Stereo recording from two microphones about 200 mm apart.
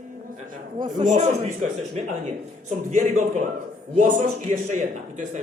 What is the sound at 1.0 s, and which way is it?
A man's voice, 40° right (ahead or behind).